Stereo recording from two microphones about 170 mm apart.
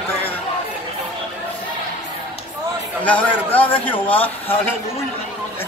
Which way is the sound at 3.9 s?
30° left (ahead or behind).